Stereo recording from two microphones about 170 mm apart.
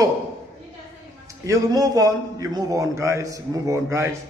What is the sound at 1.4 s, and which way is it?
A man's voice, 20° right (ahead or behind).